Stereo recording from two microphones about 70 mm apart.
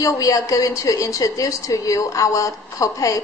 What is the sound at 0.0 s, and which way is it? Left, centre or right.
A woman's voice, left.